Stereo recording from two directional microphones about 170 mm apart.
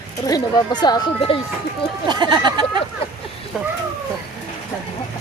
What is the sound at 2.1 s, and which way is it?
Speech, 25° right (ahead or behind).